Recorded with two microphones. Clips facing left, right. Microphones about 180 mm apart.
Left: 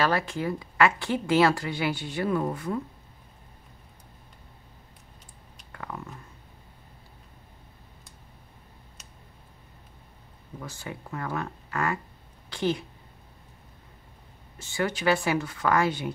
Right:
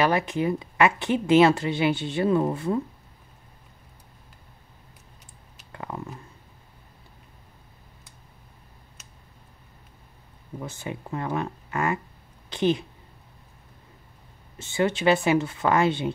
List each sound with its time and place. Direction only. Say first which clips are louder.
0.0 s a woman's voice: right 3 dB; 20° right (ahead or behind)
5.7 s a sound: right 3 dB; 25° right (ahead or behind)
10.6 s a woman's voice: right 4 dB; 20° right (ahead or behind)
14.6 s a woman's voice: right 5 dB; 25° right (ahead or behind)